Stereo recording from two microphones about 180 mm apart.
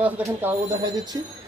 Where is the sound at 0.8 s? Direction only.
25° right (ahead or behind).